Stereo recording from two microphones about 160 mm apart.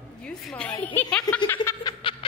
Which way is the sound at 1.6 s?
30° left (ahead or behind).